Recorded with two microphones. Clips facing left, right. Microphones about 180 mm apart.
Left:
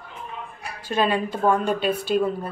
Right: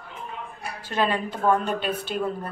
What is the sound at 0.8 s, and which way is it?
A woman's voice, 15° left (ahead or behind).